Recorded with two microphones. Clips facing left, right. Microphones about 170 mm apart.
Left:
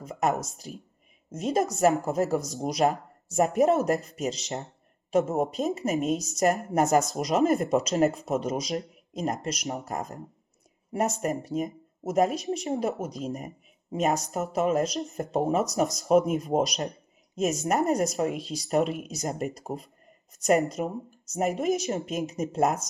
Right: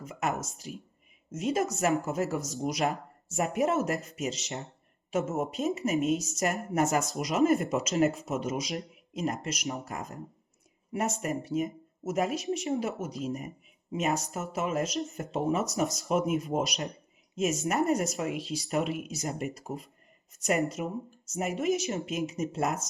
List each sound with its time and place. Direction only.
0.0 s speech: 35° left (ahead or behind)
11.2 s speech: 35° left (ahead or behind)